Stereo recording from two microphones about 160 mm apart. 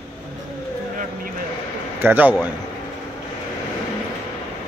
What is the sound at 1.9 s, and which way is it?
Speech, 10° right (ahead or behind).